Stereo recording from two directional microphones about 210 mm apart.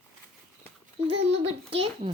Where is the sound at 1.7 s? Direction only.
25° right (ahead or behind).